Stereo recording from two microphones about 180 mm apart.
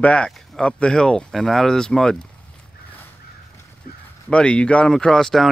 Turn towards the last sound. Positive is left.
turn(degrees=0)  # may be behind; listen again after turning